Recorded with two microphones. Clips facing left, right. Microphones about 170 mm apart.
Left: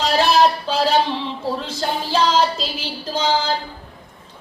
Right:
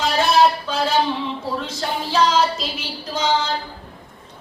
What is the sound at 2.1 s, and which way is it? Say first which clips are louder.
Child singing: even; 30° left (ahead or behind).